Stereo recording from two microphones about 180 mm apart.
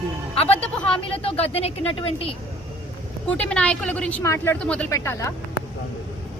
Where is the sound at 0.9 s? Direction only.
30° left (ahead or behind).